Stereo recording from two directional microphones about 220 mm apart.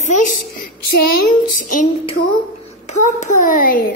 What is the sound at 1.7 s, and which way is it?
A child's voice, 35° left (ahead or behind).